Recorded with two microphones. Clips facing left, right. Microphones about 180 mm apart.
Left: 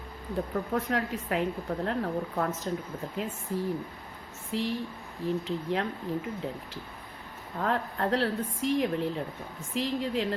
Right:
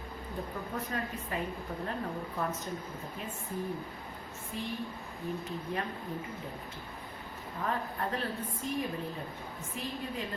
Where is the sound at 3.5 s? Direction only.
90° left.